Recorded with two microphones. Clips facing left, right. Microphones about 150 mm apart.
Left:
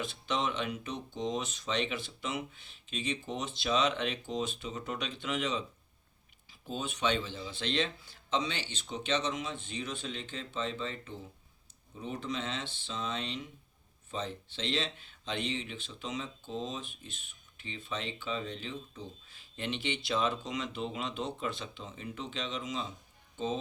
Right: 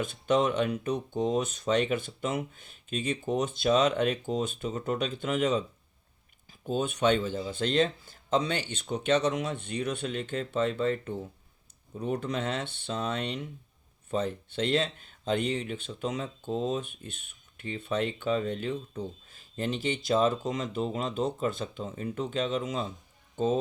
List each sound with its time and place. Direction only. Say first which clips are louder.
0.0 s speech: right 8 dB; 50° right (ahead or behind)